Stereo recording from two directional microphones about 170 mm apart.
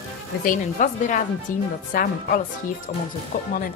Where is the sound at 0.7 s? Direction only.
45° left (ahead or behind).